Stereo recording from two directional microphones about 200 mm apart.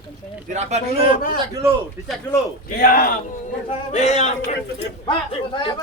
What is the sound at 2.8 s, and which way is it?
A man's voice, 45° left (ahead or behind).